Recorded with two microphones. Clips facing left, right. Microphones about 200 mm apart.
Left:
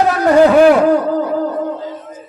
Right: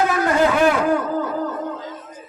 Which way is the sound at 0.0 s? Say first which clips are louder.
Left 7 dB; 40° left (ahead or behind).